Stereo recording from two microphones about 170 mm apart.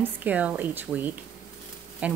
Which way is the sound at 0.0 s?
10° right (ahead or behind).